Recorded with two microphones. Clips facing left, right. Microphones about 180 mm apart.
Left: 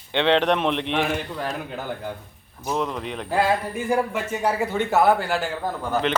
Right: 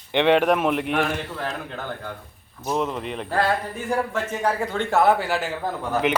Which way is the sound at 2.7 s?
5° right (ahead or behind).